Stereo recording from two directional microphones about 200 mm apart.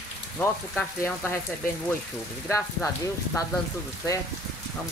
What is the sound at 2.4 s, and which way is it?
Speech, 15° left (ahead or behind).